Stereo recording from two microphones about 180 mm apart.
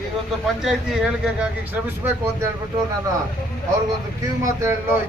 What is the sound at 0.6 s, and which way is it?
Speech, 5° right (ahead or behind).